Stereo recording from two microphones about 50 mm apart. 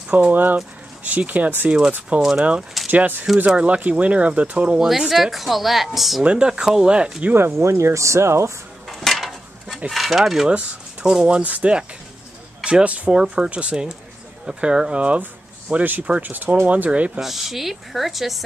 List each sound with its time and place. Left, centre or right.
0.3 s speech: right
1.7 s speech: right
2.9 s speech: right
4.7 s speech: centre
6.2 s speech: centre
7.3 s speech: right
8.8 s a sound: centre
9.8 s speech: centre
11.2 s speech: right
15.7 s speech: right
17.2 s speech: centre